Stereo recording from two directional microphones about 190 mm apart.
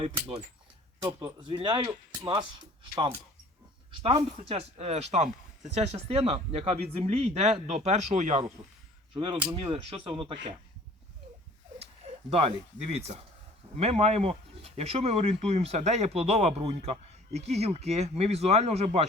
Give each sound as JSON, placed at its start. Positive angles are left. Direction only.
{"t": 0.0, "sound": "speech", "side_deg": -30}
{"t": 4.0, "sound": "speech", "side_deg": -30}
{"t": 9.1, "sound": "speech", "side_deg": -25}
{"t": 12.3, "sound": "speech", "side_deg": -35}
{"t": 13.7, "sound": "speech", "side_deg": -35}